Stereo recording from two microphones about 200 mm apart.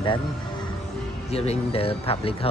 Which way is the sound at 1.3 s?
30° left (ahead or behind).